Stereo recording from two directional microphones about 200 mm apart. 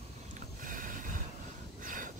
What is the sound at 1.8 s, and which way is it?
Vehicle, 40° right (ahead or behind).